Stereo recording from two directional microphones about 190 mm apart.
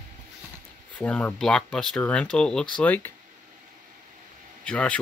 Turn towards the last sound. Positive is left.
turn(degrees=5)  # may be behind; listen again after turning